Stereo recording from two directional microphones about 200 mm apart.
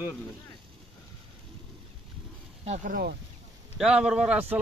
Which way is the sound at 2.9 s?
50° right (ahead or behind).